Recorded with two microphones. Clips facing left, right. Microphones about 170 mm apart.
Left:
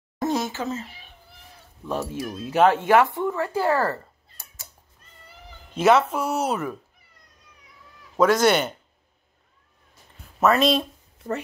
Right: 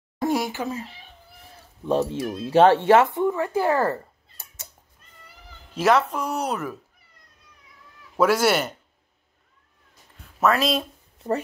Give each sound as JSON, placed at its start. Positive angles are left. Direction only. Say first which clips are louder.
{"t": 0.2, "sound": "a sound", "louder": "right 1 dB", "side_deg": -15}
{"t": 1.9, "sound": "speech", "louder": "right 5 dB", "side_deg": -25}
{"t": 5.8, "sound": "speech", "louder": "left 2 dB", "side_deg": 0}
{"t": 8.2, "sound": "speech", "louder": "left 1 dB", "side_deg": -5}
{"t": 10.4, "sound": "speech", "louder": "left 2 dB", "side_deg": 0}